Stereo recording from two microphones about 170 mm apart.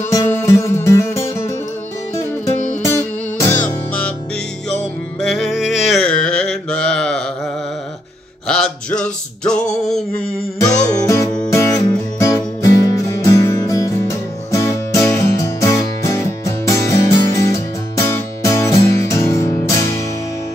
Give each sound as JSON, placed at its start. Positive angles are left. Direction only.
{"t": 0.1, "sound": "music", "side_deg": 15}
{"t": 2.8, "sound": "music", "side_deg": 15}
{"t": 5.2, "sound": "mantra", "side_deg": 0}
{"t": 8.5, "sound": "male singing", "side_deg": 5}
{"t": 10.9, "sound": "music", "side_deg": 20}